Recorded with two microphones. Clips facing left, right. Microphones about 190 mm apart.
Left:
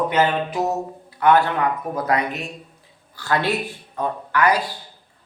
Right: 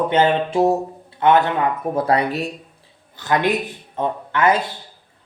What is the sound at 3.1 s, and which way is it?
Speech, 20° right (ahead or behind).